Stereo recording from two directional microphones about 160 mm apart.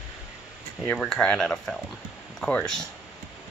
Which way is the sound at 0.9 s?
5° left (ahead or behind).